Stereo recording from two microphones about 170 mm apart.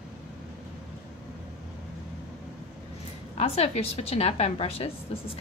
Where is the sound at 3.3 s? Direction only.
35° left (ahead or behind).